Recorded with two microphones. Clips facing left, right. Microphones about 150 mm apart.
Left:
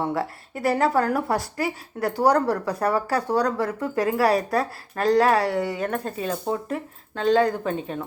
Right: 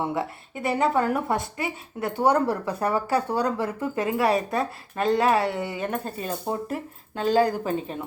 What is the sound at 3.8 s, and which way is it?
Speech, centre (ahead or behind).